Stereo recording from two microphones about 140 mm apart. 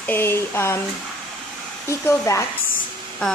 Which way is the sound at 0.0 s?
15° left (ahead or behind).